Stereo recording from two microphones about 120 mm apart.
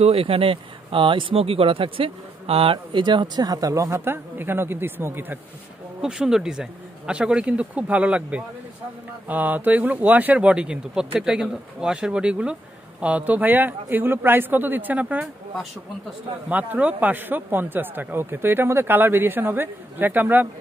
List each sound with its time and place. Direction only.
0.0 s speech: 55° right (ahead or behind); by 5.4 s 15° right (ahead or behind)
6.0 s a man's voice: 5° right (ahead or behind)